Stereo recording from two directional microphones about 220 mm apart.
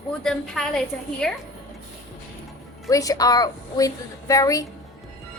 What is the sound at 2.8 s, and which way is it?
A woman's voice, 15° left (ahead or behind).